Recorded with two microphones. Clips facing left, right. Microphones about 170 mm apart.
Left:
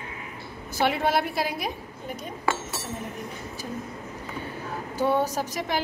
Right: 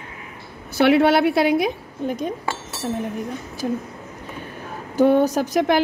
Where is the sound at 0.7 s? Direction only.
80° right.